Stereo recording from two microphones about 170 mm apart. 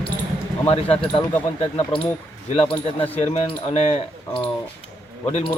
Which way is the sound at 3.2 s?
35° left (ahead or behind).